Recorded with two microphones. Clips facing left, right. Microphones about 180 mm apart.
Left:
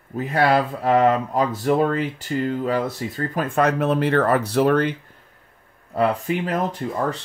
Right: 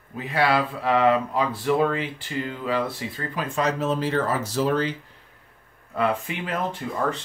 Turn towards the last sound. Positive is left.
turn(degrees=40)  # may be behind; listen again after turning